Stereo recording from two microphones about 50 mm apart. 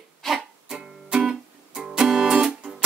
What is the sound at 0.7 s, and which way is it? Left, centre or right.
Music, centre.